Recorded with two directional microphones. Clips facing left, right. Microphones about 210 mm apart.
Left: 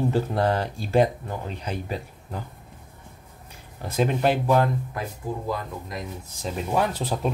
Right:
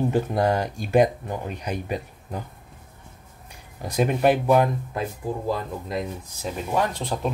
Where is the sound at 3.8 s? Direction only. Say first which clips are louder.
Right 2 dB; 15° right (ahead or behind).